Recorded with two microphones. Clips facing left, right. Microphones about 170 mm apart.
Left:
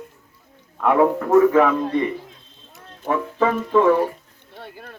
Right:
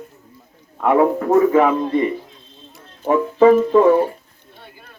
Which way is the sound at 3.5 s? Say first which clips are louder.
Right 5 dB; 35° right (ahead or behind).